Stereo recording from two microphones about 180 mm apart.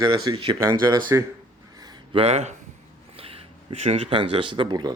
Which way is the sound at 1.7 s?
25° right (ahead or behind).